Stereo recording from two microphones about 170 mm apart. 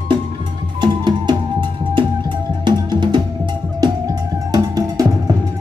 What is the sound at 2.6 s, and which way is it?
Music, 25° right (ahead or behind).